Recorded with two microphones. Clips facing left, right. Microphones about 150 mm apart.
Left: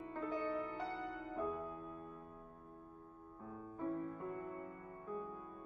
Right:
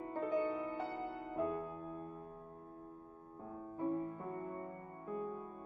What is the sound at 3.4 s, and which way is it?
Music, 30° right (ahead or behind).